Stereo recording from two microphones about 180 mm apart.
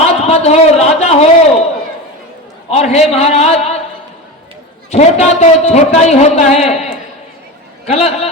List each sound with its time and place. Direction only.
0.0 s a sound: 35° left (ahead or behind)
2.6 s a man's voice: 35° left (ahead or behind)
4.9 s a man's voice: 40° left (ahead or behind)
7.9 s a man's voice: 35° left (ahead or behind)